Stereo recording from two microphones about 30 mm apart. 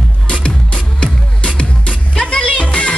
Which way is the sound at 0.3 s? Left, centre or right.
Left.